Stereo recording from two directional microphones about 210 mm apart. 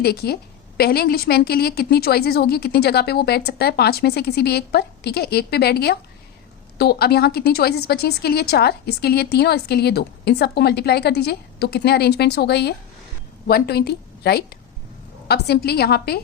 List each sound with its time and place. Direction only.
0.0 s a woman's voice: 50° left (ahead or behind)